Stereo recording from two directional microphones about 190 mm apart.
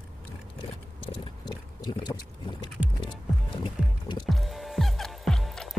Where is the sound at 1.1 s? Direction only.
25° left (ahead or behind).